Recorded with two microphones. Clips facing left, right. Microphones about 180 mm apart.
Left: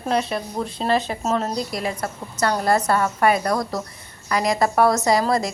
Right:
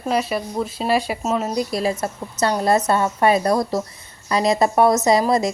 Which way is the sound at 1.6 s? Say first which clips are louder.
Right 4 dB; 25° right (ahead or behind).